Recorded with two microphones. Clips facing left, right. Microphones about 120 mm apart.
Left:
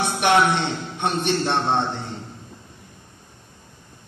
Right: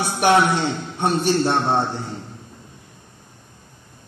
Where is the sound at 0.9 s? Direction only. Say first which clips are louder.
Right 4 dB; 35° right (ahead or behind).